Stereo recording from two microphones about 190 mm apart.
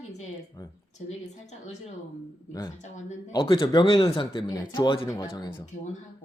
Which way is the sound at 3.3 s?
25° left (ahead or behind).